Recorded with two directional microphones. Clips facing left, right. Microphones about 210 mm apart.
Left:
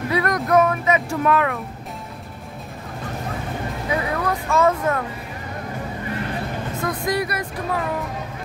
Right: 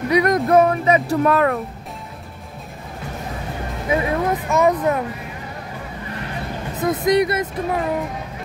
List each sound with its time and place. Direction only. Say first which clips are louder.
0.1 s speech: right 4 dB; 20° right (ahead or behind); by 1.6 s 40° right (ahead or behind)
3.9 s speech: right 4 dB; 25° right (ahead or behind)
6.8 s speech: right 7 dB; 20° right (ahead or behind)